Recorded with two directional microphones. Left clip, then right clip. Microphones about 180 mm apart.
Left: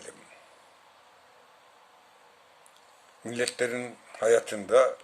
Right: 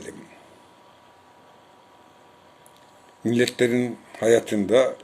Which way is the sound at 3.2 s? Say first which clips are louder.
Right 8 dB; 5° left (ahead or behind).